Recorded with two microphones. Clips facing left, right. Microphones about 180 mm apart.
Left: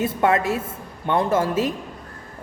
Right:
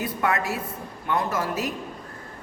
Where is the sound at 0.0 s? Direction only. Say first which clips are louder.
Left 6 dB; 25° left (ahead or behind).